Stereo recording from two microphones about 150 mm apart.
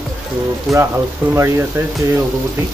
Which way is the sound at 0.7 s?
Centre (ahead or behind).